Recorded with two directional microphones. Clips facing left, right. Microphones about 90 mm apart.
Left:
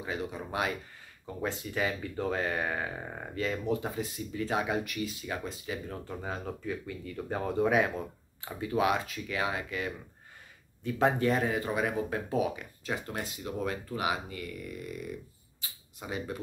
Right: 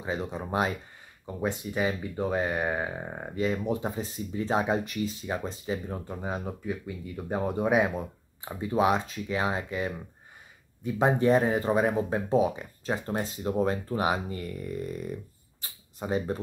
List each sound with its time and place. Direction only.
0.0 s speech: 25° right (ahead or behind)
8.5 s speech: 25° right (ahead or behind)